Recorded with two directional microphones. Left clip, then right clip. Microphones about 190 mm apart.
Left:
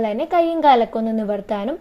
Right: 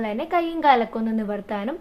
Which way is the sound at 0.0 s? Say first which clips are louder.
Left 6 dB; 25° left (ahead or behind).